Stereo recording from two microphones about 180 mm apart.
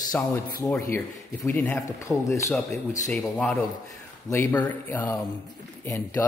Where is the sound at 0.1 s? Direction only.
20° left (ahead or behind).